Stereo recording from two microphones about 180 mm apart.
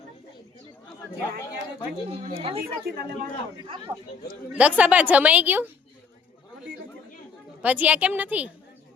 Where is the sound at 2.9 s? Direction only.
60° right (ahead or behind).